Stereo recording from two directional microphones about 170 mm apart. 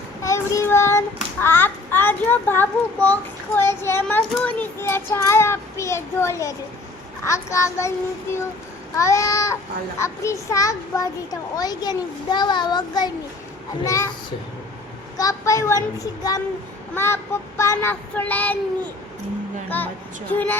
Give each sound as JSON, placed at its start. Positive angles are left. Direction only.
{"t": 0.2, "sound": "child singing", "side_deg": 20}
{"t": 7.3, "sound": "a child's voice", "side_deg": 15}
{"t": 15.2, "sound": "a child's voice", "side_deg": 20}